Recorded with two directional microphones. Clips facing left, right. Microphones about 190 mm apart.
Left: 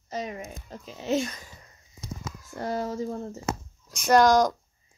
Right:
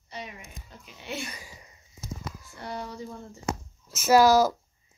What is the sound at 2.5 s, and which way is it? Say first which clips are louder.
Speech: left 8 dB; 40° left (ahead or behind).